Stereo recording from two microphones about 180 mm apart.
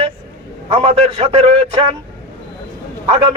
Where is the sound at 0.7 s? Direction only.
35° right (ahead or behind).